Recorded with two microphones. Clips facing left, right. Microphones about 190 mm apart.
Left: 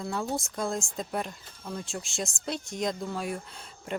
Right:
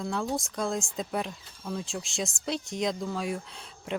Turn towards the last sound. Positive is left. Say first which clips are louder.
# right 1 dB
turn(degrees=0)  # may be behind; listen again after turning